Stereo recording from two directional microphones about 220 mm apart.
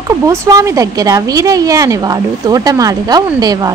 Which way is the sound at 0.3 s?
15° right (ahead or behind).